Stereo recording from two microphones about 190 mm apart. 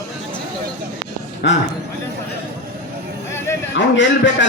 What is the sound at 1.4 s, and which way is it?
Speech, 65° left (ahead or behind).